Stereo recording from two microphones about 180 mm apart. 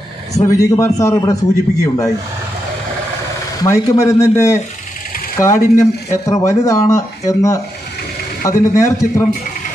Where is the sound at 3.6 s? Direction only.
15° left (ahead or behind).